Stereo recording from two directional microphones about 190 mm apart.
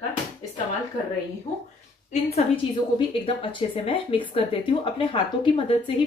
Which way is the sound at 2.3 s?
30° left (ahead or behind).